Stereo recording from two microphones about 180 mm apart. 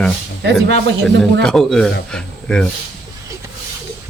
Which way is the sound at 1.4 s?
5° left (ahead or behind).